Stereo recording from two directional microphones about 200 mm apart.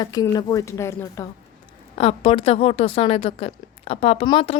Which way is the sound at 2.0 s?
30° left (ahead or behind).